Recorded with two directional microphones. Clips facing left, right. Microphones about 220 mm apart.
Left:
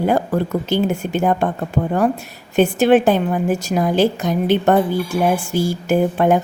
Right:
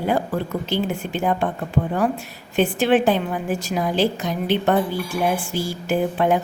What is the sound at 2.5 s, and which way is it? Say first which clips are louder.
A woman's voice: left 5 dB; 45° left (ahead or behind).